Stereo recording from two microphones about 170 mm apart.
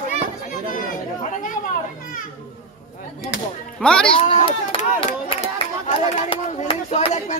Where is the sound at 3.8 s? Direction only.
5° left (ahead or behind).